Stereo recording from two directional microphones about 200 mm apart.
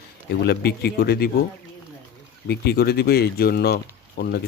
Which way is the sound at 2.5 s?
50° left (ahead or behind).